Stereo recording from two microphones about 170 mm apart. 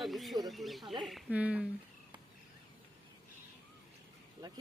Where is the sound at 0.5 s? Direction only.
Centre (ahead or behind).